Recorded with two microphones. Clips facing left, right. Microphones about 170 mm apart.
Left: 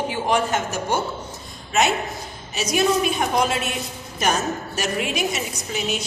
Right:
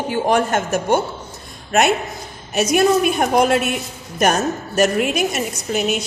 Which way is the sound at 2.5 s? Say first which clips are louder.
Right 5 dB; 55° right (ahead or behind).